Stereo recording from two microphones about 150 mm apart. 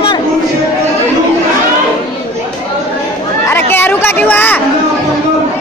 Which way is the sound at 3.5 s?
15° left (ahead or behind).